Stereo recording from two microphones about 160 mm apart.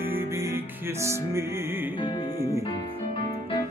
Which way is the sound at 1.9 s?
30° left (ahead or behind).